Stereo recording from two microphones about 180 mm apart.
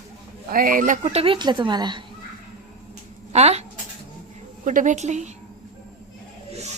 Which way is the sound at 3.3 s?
35° right (ahead or behind).